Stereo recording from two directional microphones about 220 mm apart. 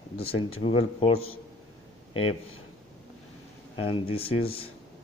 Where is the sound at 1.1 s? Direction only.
70° left (ahead or behind).